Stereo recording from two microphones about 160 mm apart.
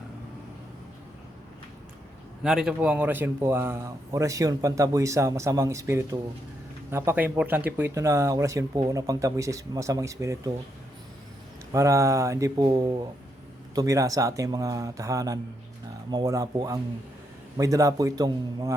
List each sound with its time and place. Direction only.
2.4 s speech: 5° right (ahead or behind); by 10.5 s 20° right (ahead or behind)
11.7 s speech: 20° right (ahead or behind)